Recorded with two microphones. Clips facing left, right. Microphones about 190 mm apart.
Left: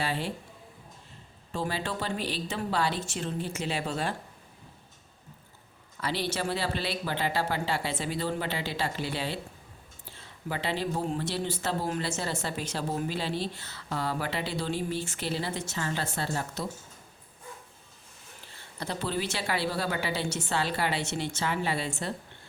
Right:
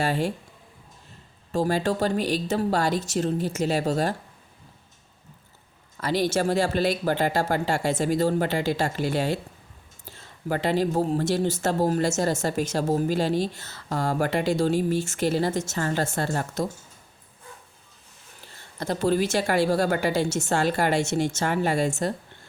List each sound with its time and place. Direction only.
0.0 s speech: 45° right (ahead or behind)
1.5 s speech: 45° right (ahead or behind)
6.0 s speech: 45° right (ahead or behind)
18.5 s speech: 45° right (ahead or behind)